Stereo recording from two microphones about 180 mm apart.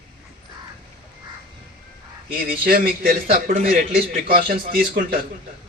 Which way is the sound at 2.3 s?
55° right (ahead or behind).